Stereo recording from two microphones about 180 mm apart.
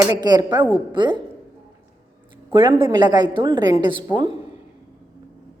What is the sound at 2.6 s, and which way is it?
A woman's voice, 25° right (ahead or behind).